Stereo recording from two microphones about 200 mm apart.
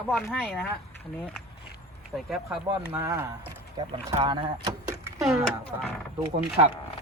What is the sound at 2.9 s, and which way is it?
Speech, 15° right (ahead or behind).